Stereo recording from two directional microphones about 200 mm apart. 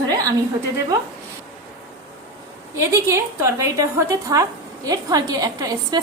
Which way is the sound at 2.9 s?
15° right (ahead or behind).